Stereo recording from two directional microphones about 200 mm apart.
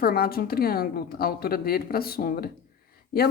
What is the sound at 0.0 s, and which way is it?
Speech, 50° left (ahead or behind).